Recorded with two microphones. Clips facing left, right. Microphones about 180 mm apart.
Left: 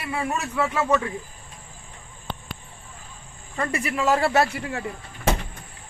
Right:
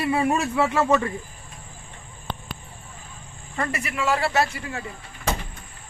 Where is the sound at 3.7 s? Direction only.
30° left (ahead or behind); by 4.8 s 55° left (ahead or behind).